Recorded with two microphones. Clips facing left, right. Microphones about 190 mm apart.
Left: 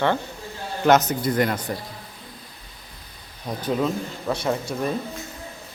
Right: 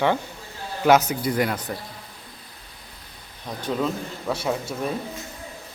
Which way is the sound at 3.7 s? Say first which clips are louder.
Left 2 dB; 5° left (ahead or behind).